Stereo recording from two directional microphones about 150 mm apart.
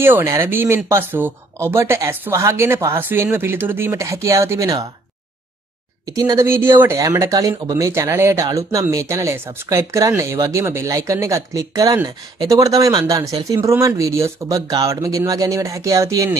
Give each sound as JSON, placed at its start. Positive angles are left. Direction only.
{"t": 0.0, "sound": "speech", "side_deg": -15}
{"t": 6.0, "sound": "speech", "side_deg": -25}